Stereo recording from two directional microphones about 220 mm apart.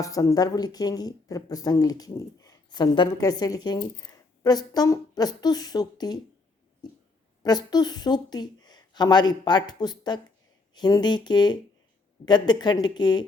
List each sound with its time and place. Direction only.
0.0 s speech: 15° left (ahead or behind)
7.4 s a woman's voice: 15° left (ahead or behind)